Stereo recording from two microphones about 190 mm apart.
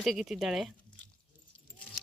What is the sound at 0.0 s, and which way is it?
Speech, centre (ahead or behind).